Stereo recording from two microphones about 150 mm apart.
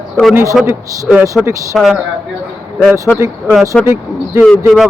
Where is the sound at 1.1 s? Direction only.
Centre (ahead or behind).